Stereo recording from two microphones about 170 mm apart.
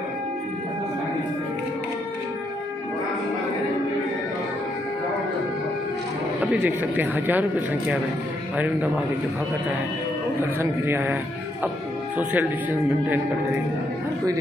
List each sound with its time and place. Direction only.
6.4 s speech: 10° right (ahead or behind)
10.6 s speech: 15° right (ahead or behind)
12.2 s speech: 10° right (ahead or behind)